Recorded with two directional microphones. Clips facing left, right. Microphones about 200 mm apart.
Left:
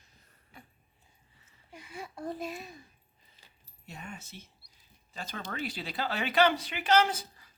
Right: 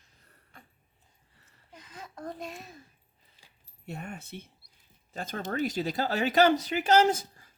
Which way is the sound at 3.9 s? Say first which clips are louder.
Right 6 dB; 60° right (ahead or behind).